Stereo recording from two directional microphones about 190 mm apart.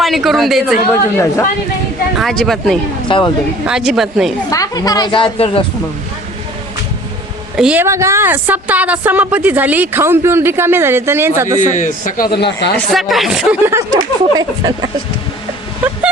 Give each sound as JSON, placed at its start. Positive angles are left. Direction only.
{"t": 0.0, "sound": "speech", "side_deg": 0}
{"t": 2.1, "sound": "speech", "side_deg": 0}
{"t": 3.1, "sound": "speech", "side_deg": 25}
{"t": 3.7, "sound": "speech", "side_deg": 0}
{"t": 4.5, "sound": "speech", "side_deg": 20}
{"t": 7.5, "sound": "speech", "side_deg": -5}
{"t": 11.6, "sound": "speech", "side_deg": 40}
{"t": 12.7, "sound": "speech", "side_deg": 0}
{"t": 13.7, "sound": "speech", "side_deg": -15}